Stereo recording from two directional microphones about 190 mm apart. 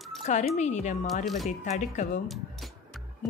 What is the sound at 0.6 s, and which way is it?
Speech, 40° left (ahead or behind).